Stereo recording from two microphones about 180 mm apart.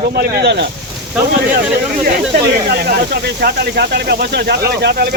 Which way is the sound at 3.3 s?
60° right (ahead or behind).